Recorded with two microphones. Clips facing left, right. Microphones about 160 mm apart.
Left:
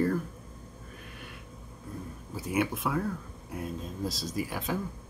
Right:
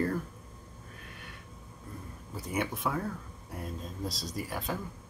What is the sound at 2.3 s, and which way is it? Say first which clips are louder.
Speech: left 4 dB; 5° left (ahead or behind).